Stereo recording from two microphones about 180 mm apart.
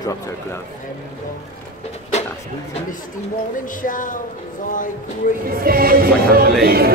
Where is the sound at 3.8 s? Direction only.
50° left (ahead or behind).